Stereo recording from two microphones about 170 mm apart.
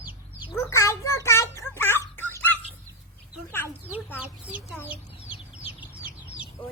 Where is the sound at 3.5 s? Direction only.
10° left (ahead or behind).